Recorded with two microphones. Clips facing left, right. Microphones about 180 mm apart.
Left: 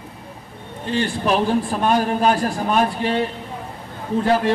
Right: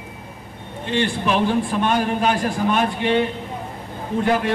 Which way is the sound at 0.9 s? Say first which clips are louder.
Left 1 dB; 40° left (ahead or behind).